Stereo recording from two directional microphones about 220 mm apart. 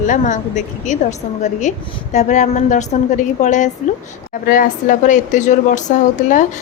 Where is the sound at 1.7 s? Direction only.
35° left (ahead or behind).